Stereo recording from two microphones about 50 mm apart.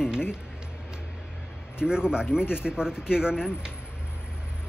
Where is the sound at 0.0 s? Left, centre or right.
Centre.